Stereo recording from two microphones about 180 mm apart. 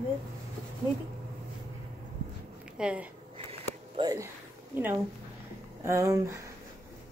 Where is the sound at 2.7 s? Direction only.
5° right (ahead or behind).